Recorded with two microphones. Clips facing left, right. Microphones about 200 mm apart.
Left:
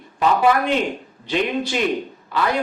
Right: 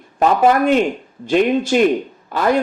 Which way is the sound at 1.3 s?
50° right (ahead or behind).